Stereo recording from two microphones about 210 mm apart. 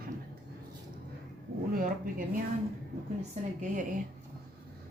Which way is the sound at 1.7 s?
40° right (ahead or behind).